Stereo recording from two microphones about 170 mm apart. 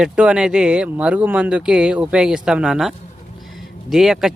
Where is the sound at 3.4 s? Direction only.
Centre (ahead or behind).